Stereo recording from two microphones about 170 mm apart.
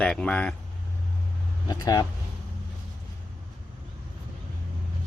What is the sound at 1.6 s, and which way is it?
Speech, 25° left (ahead or behind).